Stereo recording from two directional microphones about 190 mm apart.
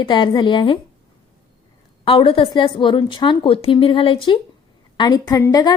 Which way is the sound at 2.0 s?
30° left (ahead or behind).